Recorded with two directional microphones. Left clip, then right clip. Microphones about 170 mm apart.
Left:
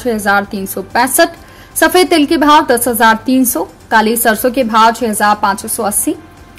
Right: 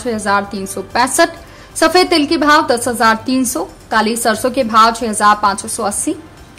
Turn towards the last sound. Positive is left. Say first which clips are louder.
# left 2 dB
turn(degrees=15)  # may be behind; listen again after turning